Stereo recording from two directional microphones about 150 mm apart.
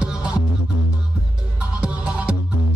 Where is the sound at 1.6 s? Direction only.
5° right (ahead or behind).